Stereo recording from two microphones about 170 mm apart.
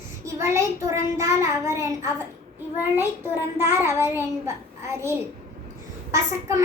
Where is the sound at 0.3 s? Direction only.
15° right (ahead or behind).